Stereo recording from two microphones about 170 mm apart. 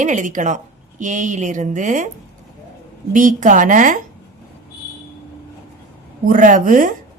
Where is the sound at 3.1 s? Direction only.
50° right (ahead or behind).